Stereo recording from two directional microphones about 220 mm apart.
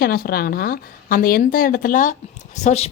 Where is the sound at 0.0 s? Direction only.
45° left (ahead or behind).